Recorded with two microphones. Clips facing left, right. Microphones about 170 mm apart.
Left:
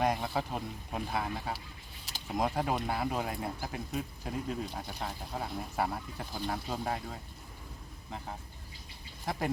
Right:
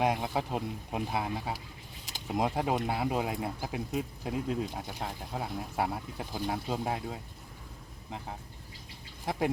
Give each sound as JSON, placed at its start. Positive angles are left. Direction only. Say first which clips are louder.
{"t": 0.0, "sound": "speech", "louder": "right 1 dB", "side_deg": -15}